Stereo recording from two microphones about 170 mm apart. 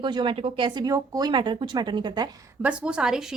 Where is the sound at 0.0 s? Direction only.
25° right (ahead or behind).